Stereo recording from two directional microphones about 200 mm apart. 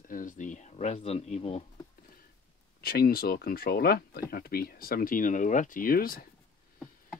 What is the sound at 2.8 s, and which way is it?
Speech, 50° left (ahead or behind).